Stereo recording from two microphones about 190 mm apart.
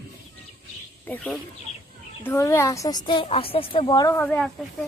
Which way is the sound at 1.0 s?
10° left (ahead or behind).